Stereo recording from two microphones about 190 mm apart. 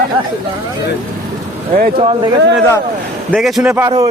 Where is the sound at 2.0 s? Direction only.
25° right (ahead or behind).